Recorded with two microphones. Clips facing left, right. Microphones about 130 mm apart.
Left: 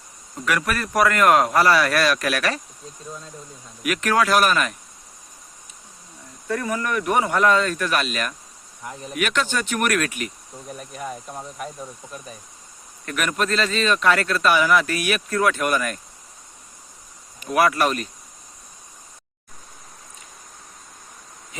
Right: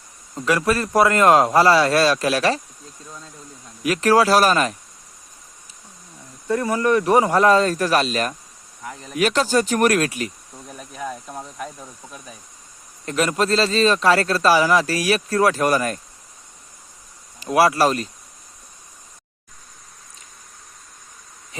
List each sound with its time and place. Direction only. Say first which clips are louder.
0.4 s speech: right 4 dB; 30° right (ahead or behind)
3.8 s speech: right 4 dB; 30° right (ahead or behind)
6.5 s speech: right 6 dB; 30° right (ahead or behind)
10.7 s speech: right 1 dB; 5° left (ahead or behind)
13.1 s speech: right 4 dB; 30° right (ahead or behind)
17.4 s speech: right 3 dB; 30° right (ahead or behind)